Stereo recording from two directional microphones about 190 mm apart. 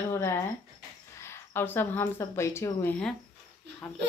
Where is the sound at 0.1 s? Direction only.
15° left (ahead or behind).